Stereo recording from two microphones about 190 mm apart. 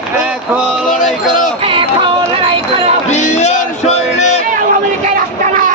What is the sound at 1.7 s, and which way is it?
Music, 25° right (ahead or behind).